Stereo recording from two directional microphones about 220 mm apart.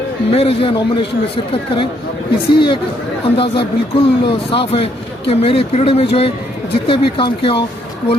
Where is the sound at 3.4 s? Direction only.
25° left (ahead or behind).